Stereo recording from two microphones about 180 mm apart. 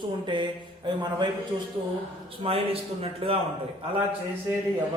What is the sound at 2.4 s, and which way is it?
Speech, 30° right (ahead or behind).